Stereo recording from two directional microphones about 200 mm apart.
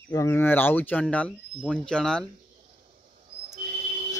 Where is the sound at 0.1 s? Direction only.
15° left (ahead or behind).